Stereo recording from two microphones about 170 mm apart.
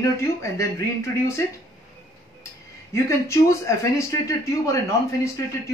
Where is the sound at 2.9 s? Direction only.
15° left (ahead or behind).